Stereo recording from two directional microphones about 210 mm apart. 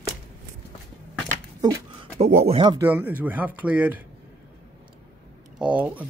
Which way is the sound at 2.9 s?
10° right (ahead or behind).